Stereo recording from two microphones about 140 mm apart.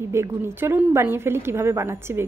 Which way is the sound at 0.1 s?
20° right (ahead or behind).